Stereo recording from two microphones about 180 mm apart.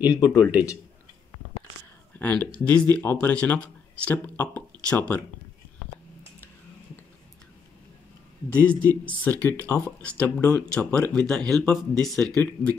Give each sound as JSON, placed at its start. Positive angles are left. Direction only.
{"t": 0.1, "sound": "a man's voice", "side_deg": 20}
{"t": 0.5, "sound": "a man's voice", "side_deg": -5}
{"t": 2.1, "sound": "speech", "side_deg": 10}
{"t": 8.5, "sound": "speech", "side_deg": 10}